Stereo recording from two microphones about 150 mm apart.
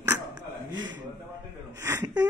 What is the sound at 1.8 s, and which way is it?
Whimper, 20° right (ahead or behind).